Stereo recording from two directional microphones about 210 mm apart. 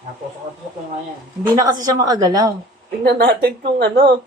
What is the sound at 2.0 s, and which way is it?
Speech, 15° right (ahead or behind).